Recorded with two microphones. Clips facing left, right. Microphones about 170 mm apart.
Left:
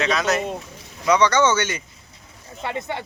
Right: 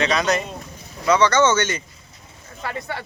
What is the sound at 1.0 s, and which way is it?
Speech, 15° left (ahead or behind).